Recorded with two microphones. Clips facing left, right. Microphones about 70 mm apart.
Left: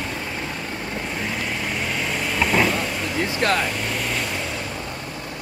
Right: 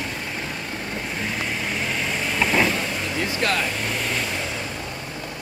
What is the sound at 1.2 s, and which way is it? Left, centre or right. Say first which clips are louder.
Vehicle: even; centre.